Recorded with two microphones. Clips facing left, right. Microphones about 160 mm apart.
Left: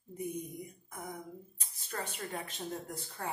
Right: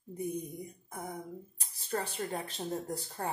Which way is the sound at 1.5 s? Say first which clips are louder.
Right 6 dB; 35° right (ahead or behind).